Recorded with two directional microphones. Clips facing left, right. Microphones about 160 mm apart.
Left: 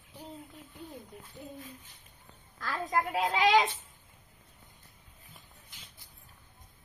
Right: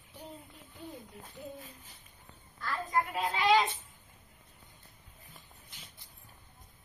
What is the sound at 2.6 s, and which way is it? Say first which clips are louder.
A woman's voice: left 1 dB; 90° left.